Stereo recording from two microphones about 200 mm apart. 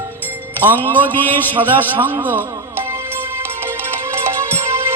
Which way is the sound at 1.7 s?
10° right (ahead or behind).